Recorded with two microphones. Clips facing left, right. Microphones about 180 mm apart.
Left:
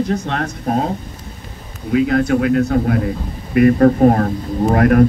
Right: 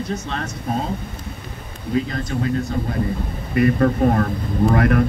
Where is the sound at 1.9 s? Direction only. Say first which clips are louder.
Left 8 dB; 75° left (ahead or behind).